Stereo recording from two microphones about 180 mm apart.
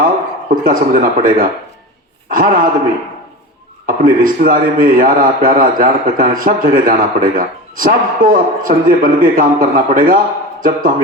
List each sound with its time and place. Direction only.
0.5 s a man's voice: 50° right (ahead or behind)
3.8 s a man's voice: 50° right (ahead or behind)